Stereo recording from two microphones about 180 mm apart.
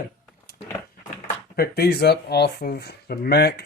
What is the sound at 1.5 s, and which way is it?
Speech, 60° left (ahead or behind).